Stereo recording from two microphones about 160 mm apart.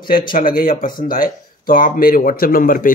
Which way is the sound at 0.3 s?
60° left (ahead or behind).